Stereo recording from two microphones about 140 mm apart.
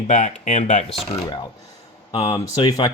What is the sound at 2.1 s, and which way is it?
Speech, 45° left (ahead or behind).